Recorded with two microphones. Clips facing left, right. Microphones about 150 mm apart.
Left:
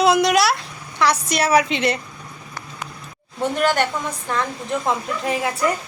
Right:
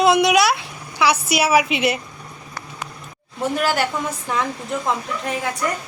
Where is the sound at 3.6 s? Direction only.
5° right (ahead or behind).